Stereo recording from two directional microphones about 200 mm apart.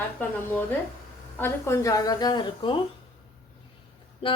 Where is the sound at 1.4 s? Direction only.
10° left (ahead or behind).